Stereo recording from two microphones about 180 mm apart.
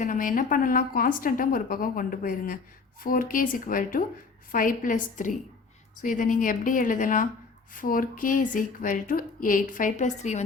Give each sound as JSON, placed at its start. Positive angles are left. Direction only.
{"t": 0.0, "sound": "speech", "side_deg": 50}